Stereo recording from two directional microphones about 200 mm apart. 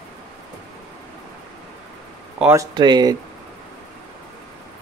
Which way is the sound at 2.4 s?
15° right (ahead or behind).